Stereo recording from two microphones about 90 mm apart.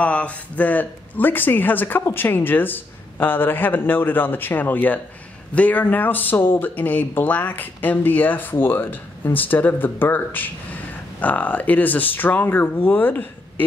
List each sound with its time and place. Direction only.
0.0 s speech: 15° left (ahead or behind)